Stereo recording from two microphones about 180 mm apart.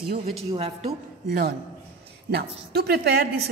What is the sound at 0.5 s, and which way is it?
Speech, 30° right (ahead or behind).